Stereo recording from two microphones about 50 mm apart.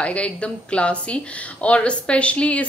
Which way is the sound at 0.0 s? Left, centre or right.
Left.